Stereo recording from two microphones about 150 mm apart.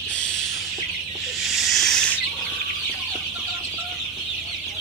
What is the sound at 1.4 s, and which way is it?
Snake, centre (ahead or behind).